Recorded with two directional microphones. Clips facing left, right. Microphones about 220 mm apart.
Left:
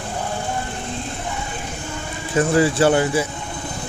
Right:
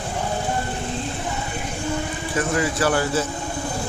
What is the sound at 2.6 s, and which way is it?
Speech, 25° left (ahead or behind).